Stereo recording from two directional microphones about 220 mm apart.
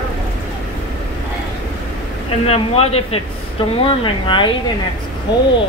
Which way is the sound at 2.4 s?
30° left (ahead or behind).